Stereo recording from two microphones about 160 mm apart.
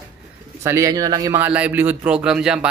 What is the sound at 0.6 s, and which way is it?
Speech, 20° right (ahead or behind).